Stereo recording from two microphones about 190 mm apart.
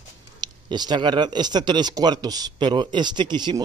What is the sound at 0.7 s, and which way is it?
Speech, 25° right (ahead or behind).